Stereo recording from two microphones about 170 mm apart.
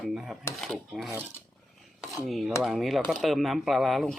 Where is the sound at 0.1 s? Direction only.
Centre (ahead or behind).